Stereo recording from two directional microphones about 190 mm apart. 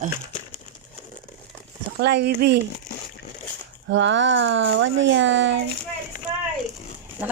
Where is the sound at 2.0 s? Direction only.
65° right (ahead or behind).